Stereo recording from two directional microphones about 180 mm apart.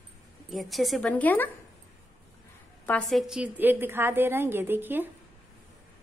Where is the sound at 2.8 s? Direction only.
10° left (ahead or behind); by 5.0 s 10° right (ahead or behind).